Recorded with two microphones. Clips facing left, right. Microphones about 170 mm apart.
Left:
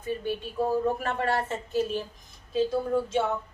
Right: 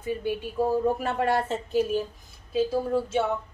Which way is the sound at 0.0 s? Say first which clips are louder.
Right 2 dB; 10° right (ahead or behind).